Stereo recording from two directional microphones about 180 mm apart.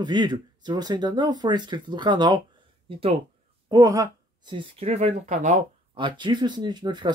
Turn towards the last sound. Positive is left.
turn(degrees=-25)  # may be behind; listen again after turning